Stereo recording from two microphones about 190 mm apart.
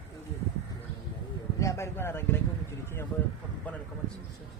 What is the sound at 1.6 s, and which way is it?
Speech, 15° left (ahead or behind).